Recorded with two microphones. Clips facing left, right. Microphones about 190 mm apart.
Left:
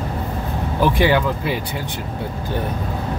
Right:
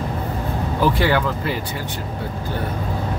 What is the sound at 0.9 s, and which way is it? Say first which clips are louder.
Speech: left 2 dB; 15° left (ahead or behind).